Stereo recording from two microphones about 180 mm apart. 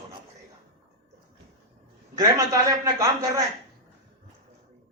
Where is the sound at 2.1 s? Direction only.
20° right (ahead or behind).